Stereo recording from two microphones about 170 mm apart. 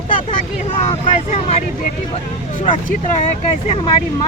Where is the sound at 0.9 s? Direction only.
40° left (ahead or behind).